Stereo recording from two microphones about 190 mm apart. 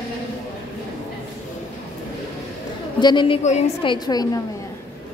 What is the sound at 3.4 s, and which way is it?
Speech, 35° left (ahead or behind).